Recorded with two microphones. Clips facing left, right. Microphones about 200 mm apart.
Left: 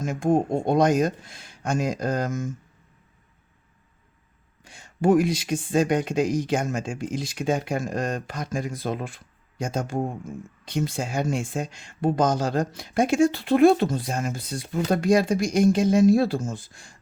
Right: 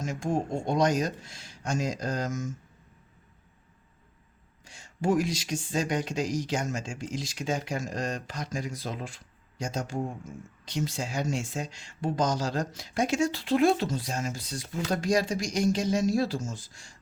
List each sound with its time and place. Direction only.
0.0 s speech: 55° left (ahead or behind)
4.6 s speech: 55° left (ahead or behind)